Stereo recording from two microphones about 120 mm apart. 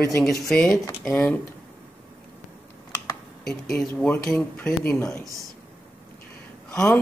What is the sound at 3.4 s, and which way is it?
Speech, 5° left (ahead or behind).